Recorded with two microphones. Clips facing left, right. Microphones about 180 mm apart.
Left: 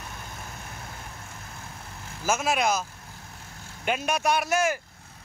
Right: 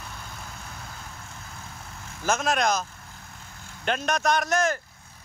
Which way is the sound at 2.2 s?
5° left (ahead or behind).